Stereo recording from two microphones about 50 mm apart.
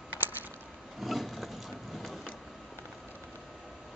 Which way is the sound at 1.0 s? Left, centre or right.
Centre.